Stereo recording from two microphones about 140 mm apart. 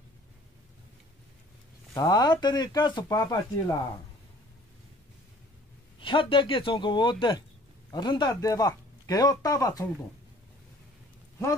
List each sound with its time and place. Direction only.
2.0 s speech: 30° left (ahead or behind)
5.9 s speech: 35° left (ahead or behind)